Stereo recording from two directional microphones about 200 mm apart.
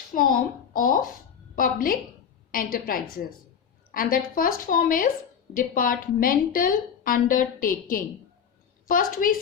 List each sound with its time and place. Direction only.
0.1 s a woman's voice: 45° left (ahead or behind)